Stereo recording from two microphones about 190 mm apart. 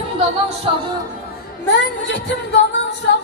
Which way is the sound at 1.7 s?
75° left (ahead or behind).